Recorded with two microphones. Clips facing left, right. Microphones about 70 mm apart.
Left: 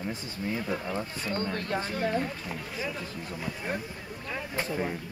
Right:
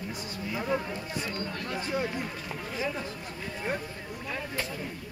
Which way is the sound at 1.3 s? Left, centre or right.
Left.